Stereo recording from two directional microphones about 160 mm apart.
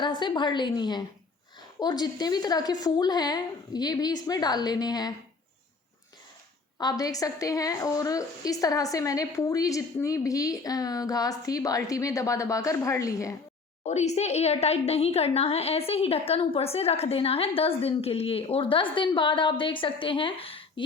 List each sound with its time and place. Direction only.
0.0 s a woman's voice: 30° left (ahead or behind)
6.7 s a woman's voice: 25° left (ahead or behind)
13.8 s a woman's voice: 45° left (ahead or behind)